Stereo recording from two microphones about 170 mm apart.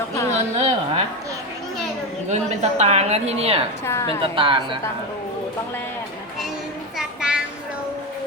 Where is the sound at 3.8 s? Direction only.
15° left (ahead or behind).